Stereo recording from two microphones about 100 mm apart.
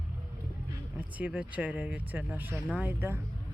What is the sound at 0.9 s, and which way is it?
Speech, 15° right (ahead or behind).